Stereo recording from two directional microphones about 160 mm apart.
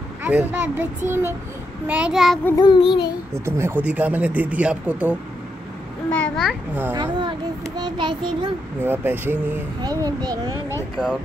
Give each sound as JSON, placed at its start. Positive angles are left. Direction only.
{"t": 0.2, "sound": "a child's voice", "side_deg": -10}
{"t": 2.5, "sound": "child singing", "side_deg": 25}
{"t": 3.3, "sound": "speech", "side_deg": -15}
{"t": 6.0, "sound": "a sound", "side_deg": 5}
{"t": 6.7, "sound": "speech", "side_deg": -15}
{"t": 7.0, "sound": "a child's voice", "side_deg": -30}
{"t": 8.8, "sound": "a child's voice", "side_deg": -15}